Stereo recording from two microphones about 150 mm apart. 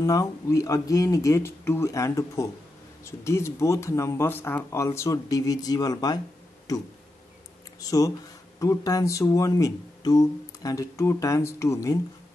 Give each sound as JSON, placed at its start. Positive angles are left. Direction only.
{"t": 0.0, "sound": "speech", "side_deg": 20}
{"t": 8.5, "sound": "speech", "side_deg": 20}